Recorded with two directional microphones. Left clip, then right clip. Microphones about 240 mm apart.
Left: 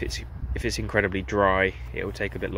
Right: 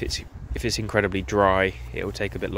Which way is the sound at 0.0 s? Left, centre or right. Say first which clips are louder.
Right 3 dB; right.